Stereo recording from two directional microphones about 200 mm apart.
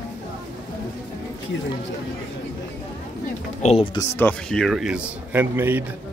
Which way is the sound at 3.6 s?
35° left (ahead or behind).